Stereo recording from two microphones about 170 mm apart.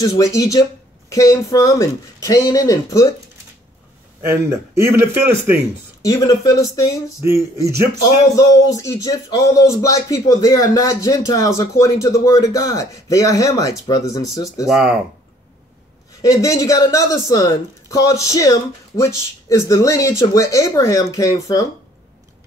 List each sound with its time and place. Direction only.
0.0 s speech: 20° left (ahead or behind)
4.3 s a man's voice: 15° right (ahead or behind)
6.0 s speech: 20° left (ahead or behind)
7.2 s a man's voice: 15° right (ahead or behind)
8.0 s speech: 20° left (ahead or behind)
14.7 s speech: 5° right (ahead or behind)
16.2 s speech: 20° left (ahead or behind)